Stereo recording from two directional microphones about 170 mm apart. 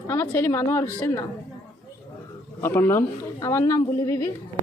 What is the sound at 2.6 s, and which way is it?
A man's voice, 15° left (ahead or behind).